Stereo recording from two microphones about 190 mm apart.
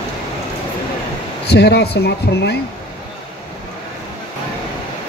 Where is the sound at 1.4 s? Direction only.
60° left (ahead or behind).